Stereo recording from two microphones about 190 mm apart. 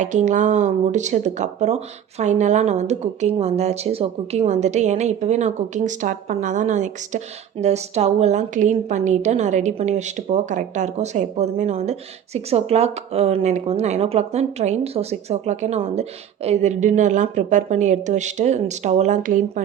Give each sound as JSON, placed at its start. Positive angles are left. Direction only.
{"t": 0.0, "sound": "a woman's voice", "side_deg": -40}